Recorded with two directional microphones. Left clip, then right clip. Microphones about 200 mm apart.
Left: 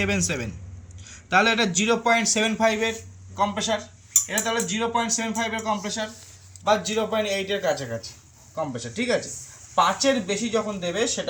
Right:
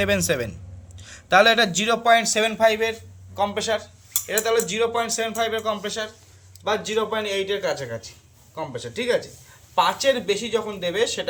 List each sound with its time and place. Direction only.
0.0 s speech: 55° right (ahead or behind)
6.7 s speech: 15° right (ahead or behind)